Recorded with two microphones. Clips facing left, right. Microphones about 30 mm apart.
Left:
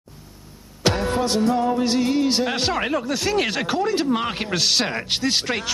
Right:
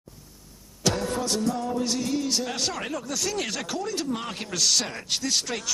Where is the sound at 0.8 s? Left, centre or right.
Left.